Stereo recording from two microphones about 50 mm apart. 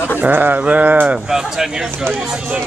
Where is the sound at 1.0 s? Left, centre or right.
Centre.